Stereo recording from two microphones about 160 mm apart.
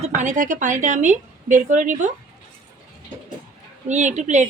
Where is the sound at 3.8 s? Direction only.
45° right (ahead or behind).